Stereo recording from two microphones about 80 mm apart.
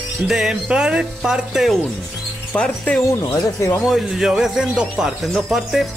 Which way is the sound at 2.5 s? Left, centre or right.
Centre.